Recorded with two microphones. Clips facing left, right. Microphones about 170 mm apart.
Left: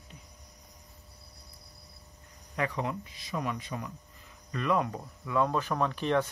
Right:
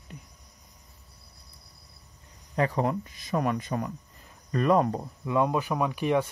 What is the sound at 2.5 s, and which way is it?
Speech, 40° right (ahead or behind).